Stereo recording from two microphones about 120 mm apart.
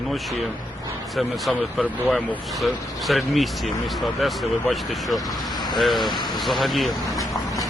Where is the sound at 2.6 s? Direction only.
Centre (ahead or behind).